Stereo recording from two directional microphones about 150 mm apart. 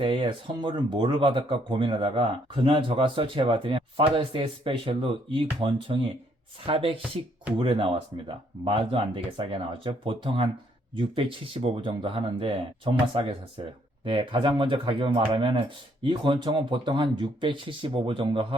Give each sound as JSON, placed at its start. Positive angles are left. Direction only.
{"t": 0.0, "sound": "speech", "side_deg": -35}